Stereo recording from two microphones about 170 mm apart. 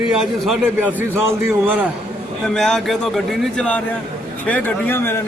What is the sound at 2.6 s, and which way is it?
A man's voice, 5° left (ahead or behind).